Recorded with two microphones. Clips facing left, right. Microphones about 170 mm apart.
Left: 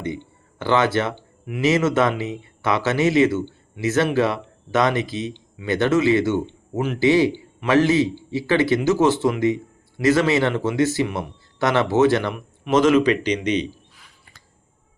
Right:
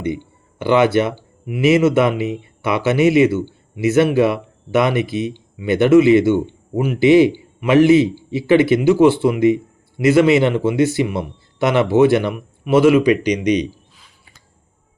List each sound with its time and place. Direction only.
0.0 s speech: 15° right (ahead or behind)